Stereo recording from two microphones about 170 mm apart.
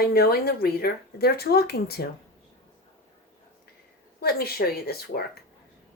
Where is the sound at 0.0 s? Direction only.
65° left (ahead or behind).